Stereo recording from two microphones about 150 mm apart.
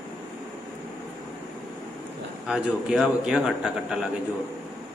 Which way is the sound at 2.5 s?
5° right (ahead or behind).